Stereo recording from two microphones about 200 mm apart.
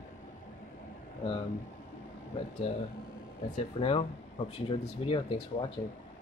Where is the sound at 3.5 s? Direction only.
30° left (ahead or behind).